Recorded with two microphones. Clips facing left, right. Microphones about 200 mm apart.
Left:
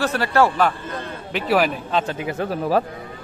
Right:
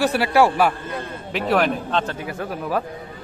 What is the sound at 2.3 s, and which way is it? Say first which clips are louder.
Speech: left 7 dB; 30° left (ahead or behind).